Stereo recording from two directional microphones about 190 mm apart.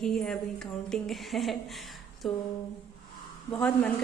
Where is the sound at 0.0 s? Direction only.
5° left (ahead or behind).